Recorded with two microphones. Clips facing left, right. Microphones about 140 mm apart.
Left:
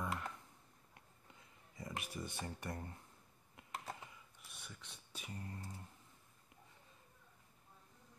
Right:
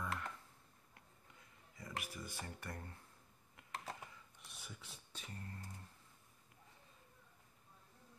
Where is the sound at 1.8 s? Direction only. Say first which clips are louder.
Left 2 dB; 25° left (ahead or behind).